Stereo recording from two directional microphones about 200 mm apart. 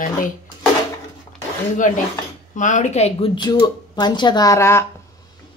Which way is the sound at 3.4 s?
20° left (ahead or behind).